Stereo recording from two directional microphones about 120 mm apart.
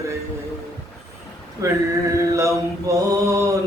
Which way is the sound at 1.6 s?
25° right (ahead or behind).